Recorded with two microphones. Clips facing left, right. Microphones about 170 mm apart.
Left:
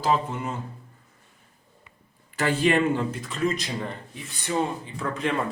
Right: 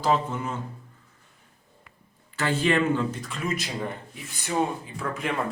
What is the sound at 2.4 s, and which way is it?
Speech, 40° left (ahead or behind).